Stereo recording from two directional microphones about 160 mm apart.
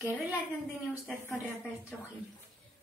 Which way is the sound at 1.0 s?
5° left (ahead or behind).